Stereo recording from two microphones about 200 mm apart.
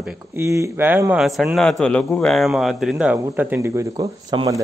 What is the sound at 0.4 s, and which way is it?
A man's voice, 15° right (ahead or behind).